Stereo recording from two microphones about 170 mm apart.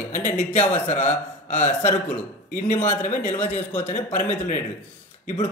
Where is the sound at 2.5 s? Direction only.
50° left (ahead or behind).